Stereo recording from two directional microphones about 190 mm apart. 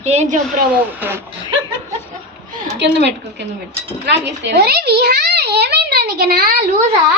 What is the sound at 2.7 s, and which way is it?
A child's voice, 65° right (ahead or behind).